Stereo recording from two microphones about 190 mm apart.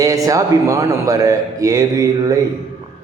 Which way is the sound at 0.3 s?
15° right (ahead or behind).